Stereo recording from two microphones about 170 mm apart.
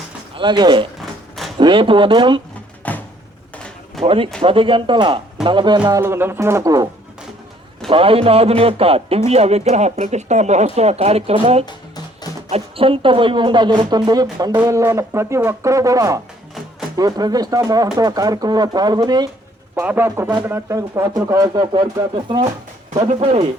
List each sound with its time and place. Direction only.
0.3 s speech: 25° right (ahead or behind)
2.8 s a sound: 10° left (ahead or behind)
4.0 s a man's voice: 30° right (ahead or behind)
5.9 s speech: 15° right (ahead or behind)
7.9 s a man's voice: 35° right (ahead or behind)
11.6 s music: 25° left (ahead or behind)
12.5 s speech: 35° right (ahead or behind)
19.8 s speech: 10° right (ahead or behind); by 22.4 s 30° right (ahead or behind)
23.2 s a man's voice: 40° right (ahead or behind)